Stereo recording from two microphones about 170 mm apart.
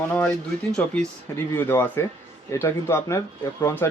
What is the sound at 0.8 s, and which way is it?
Speech, 10° left (ahead or behind).